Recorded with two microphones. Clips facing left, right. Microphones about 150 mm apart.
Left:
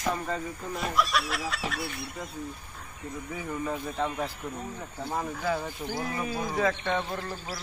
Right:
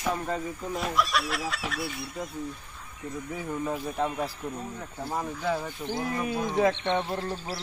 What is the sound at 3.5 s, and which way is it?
Speech, 5° right (ahead or behind).